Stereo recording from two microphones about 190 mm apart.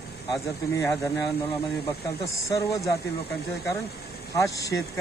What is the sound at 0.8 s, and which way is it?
Speech, 10° left (ahead or behind).